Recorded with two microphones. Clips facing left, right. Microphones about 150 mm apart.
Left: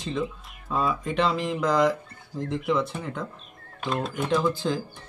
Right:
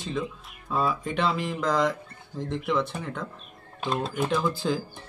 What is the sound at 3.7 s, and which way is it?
Speech, 25° right (ahead or behind).